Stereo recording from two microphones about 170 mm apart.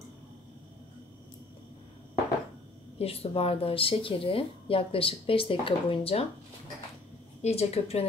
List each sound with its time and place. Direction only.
3.0 s speech: 35° left (ahead or behind)
7.4 s speech: 35° left (ahead or behind)